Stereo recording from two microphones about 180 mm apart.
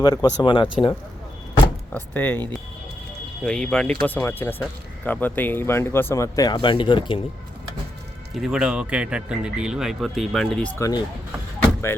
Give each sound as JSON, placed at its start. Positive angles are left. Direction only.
{"t": 0.0, "sound": "speech", "side_deg": 20}
{"t": 1.9, "sound": "speech", "side_deg": 10}
{"t": 3.4, "sound": "speech", "side_deg": 5}
{"t": 8.4, "sound": "speech", "side_deg": -5}
{"t": 10.8, "sound": "speech", "side_deg": 20}